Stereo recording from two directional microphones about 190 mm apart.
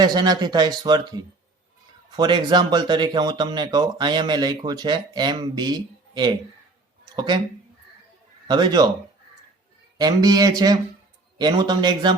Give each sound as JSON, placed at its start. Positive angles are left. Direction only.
{"t": 0.0, "sound": "speech", "side_deg": -20}
{"t": 2.0, "sound": "speech", "side_deg": -25}
{"t": 7.0, "sound": "a sound", "side_deg": -25}
{"t": 8.4, "sound": "speech", "side_deg": -20}
{"t": 10.0, "sound": "speech", "side_deg": -20}